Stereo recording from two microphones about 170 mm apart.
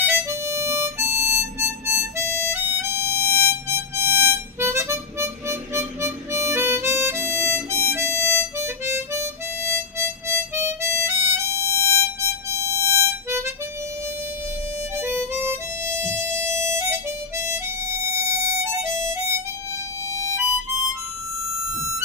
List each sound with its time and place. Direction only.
0.0 s harmonica: 15° right (ahead or behind)
11.4 s music: 15° left (ahead or behind)
12.4 s harmonica: 15° right (ahead or behind)
15.0 s harmonica: 15° right (ahead or behind)